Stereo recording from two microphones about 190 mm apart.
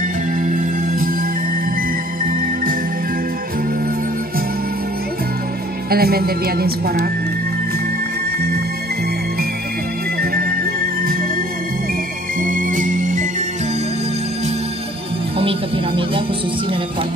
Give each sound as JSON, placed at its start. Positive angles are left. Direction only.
{"t": 0.4, "sound": "music", "side_deg": -45}
{"t": 5.9, "sound": "speech", "side_deg": -55}
{"t": 12.4, "sound": "music", "side_deg": -45}